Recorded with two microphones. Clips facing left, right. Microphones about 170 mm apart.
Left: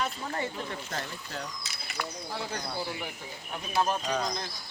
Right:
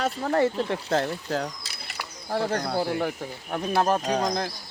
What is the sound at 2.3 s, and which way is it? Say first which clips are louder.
Speech: right 12 dB; 55° right (ahead or behind).